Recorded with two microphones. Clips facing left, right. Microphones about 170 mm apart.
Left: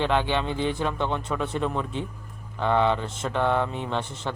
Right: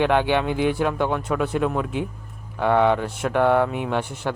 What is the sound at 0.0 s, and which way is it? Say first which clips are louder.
Speech: right 5 dB; 15° right (ahead or behind).